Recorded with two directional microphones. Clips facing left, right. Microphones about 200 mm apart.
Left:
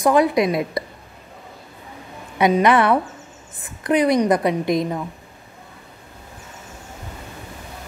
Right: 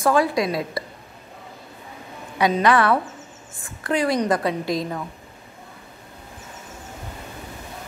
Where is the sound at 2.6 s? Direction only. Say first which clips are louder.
Even; 20° left (ahead or behind).